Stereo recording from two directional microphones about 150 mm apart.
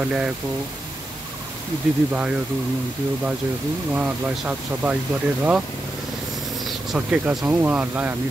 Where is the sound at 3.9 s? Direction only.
10° right (ahead or behind).